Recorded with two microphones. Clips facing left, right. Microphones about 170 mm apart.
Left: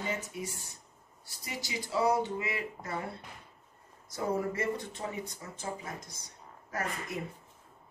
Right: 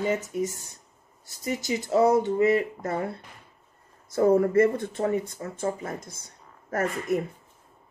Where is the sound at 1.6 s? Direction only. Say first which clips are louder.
Right 8 dB; 45° right (ahead or behind).